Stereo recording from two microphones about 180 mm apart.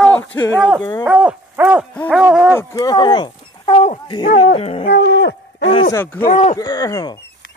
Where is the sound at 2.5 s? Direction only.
20° left (ahead or behind).